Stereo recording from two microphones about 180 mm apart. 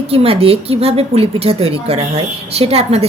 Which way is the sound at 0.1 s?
30° right (ahead or behind).